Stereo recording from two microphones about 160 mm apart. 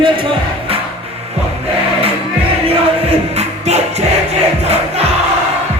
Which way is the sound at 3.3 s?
40° right (ahead or behind).